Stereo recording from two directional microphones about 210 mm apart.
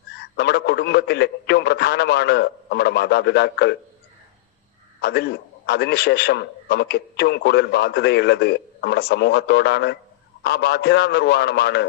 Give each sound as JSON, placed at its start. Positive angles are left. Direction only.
{"t": 0.2, "sound": "a man's voice", "side_deg": 50}
{"t": 4.9, "sound": "a man's voice", "side_deg": 50}